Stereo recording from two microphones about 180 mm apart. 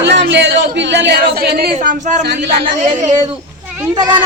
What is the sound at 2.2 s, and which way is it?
Speech, 65° right (ahead or behind).